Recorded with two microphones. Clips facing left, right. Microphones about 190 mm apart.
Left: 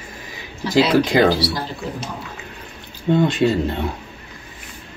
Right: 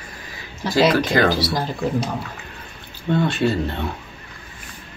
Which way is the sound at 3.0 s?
15° left (ahead or behind).